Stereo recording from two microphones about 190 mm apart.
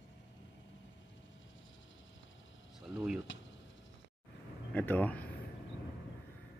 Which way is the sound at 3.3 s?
80° left.